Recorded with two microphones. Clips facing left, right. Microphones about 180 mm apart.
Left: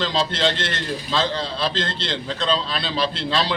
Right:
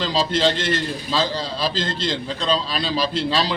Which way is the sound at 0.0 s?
10° right (ahead or behind).